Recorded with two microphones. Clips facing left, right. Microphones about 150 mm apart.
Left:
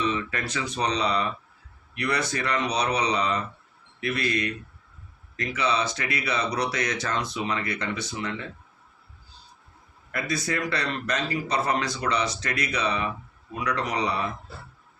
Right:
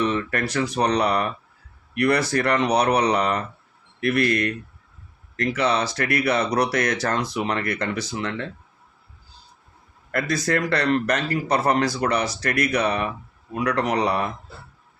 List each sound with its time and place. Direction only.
0.0 s a man's voice: 60° right (ahead or behind)
10.1 s a man's voice: 70° right (ahead or behind)